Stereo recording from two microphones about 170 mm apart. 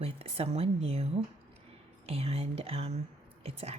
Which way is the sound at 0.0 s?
35° right (ahead or behind).